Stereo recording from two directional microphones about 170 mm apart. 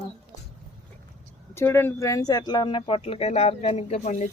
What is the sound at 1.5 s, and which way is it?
Speech, 15° left (ahead or behind).